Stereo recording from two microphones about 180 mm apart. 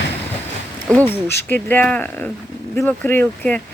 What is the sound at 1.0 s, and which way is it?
Speech, 10° left (ahead or behind).